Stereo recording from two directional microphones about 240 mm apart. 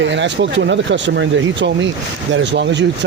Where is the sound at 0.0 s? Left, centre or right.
Right.